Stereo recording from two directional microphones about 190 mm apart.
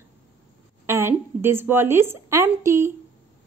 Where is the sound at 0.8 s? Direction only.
10° right (ahead or behind).